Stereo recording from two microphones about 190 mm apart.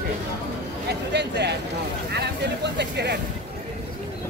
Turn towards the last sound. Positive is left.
turn(degrees=-60)  # may be behind; listen again after turning